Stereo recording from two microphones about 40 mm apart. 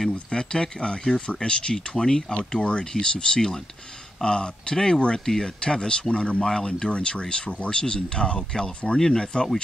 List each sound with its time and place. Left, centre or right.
0.1 s speech: left
2.5 s speech: left